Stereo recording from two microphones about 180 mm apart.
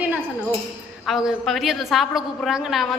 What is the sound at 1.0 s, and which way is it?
A woman's voice, centre (ahead or behind).